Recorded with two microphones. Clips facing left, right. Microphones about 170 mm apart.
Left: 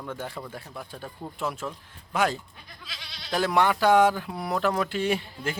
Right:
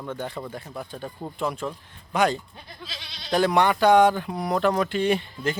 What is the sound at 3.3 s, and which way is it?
Speech, centre (ahead or behind).